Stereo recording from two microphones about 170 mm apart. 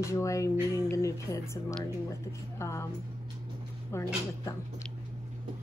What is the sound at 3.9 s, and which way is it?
Speech, 15° left (ahead or behind).